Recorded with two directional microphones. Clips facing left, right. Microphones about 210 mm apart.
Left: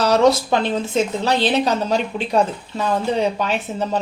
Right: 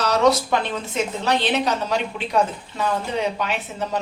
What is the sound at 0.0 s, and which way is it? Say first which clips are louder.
A woman's voice: left 3 dB; 30° left (ahead or behind).